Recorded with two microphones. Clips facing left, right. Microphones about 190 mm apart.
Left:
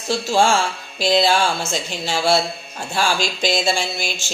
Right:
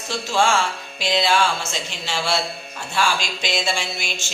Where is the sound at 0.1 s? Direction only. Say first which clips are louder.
Left 3 dB; 35° left (ahead or behind).